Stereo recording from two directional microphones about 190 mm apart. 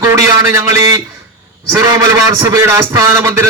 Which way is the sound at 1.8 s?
15° right (ahead or behind).